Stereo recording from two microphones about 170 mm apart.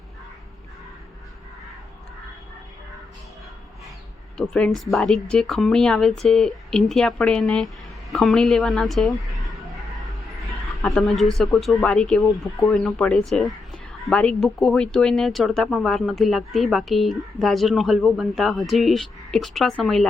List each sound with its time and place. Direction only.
4.4 s speech: 5° left (ahead or behind)
10.8 s speech: centre (ahead or behind)